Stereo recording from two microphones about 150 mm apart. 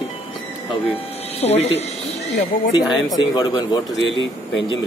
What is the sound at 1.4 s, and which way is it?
Speech, 45° left (ahead or behind).